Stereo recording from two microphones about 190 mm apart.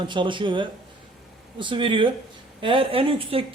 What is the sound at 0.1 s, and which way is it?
A woman's voice, 25° right (ahead or behind).